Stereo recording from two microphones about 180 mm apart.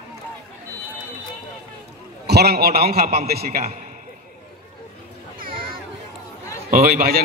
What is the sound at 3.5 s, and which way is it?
Speech, 45° right (ahead or behind).